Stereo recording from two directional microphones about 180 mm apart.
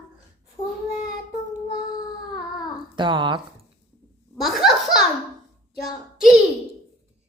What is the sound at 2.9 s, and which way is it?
Speech, 25° right (ahead or behind).